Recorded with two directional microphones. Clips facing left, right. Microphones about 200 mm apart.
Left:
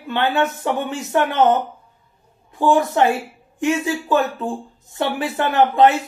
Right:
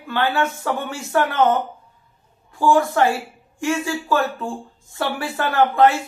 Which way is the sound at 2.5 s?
20° left (ahead or behind).